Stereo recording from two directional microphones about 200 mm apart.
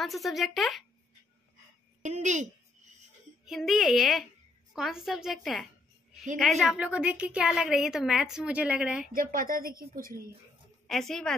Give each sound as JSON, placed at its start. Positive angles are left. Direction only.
{"t": 0.0, "sound": "a woman's voice", "side_deg": 0}
{"t": 2.0, "sound": "speech", "side_deg": -35}
{"t": 3.4, "sound": "a woman's voice", "side_deg": 0}
{"t": 9.1, "sound": "speech", "side_deg": -45}
{"t": 10.9, "sound": "a woman's voice", "side_deg": 0}